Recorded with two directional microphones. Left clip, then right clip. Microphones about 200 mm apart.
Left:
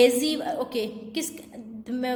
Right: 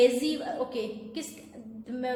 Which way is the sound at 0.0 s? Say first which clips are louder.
Left 3 dB; 50° left (ahead or behind).